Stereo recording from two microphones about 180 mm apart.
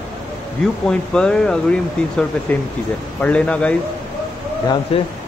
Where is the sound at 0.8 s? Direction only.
5° left (ahead or behind).